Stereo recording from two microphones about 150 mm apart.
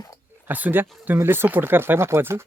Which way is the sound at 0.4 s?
10° right (ahead or behind).